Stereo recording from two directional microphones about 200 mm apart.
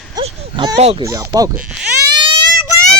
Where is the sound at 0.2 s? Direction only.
25° right (ahead or behind).